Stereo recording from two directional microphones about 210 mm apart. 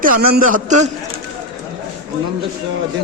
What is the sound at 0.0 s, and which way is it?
Speech, 40° right (ahead or behind).